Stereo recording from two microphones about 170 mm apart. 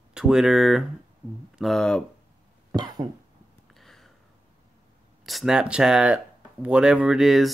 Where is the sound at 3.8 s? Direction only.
Centre (ahead or behind).